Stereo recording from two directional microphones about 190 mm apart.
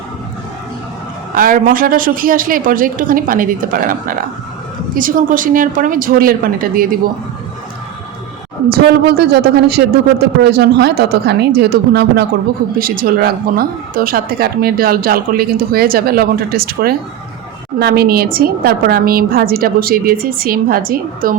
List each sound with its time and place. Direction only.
1.4 s a woman's voice: 45° right (ahead or behind)
8.7 s a woman's voice: 55° right (ahead or behind)